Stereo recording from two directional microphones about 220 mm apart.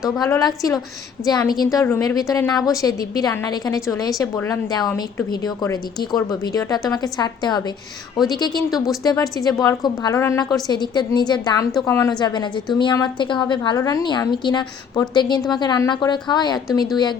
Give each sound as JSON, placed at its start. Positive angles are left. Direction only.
{"t": 0.2, "sound": "a woman's voice", "side_deg": 15}
{"t": 8.2, "sound": "a woman's voice", "side_deg": 0}
{"t": 9.0, "sound": "a woman's voice", "side_deg": 15}